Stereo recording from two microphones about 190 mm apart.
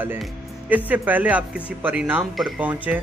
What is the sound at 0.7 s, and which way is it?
Speech, 10° right (ahead or behind).